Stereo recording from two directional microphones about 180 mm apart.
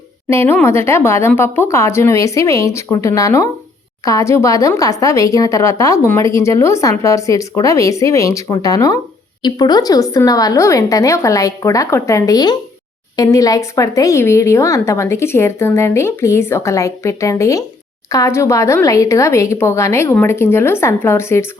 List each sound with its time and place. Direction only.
0.3 s a woman's voice: 15° left (ahead or behind)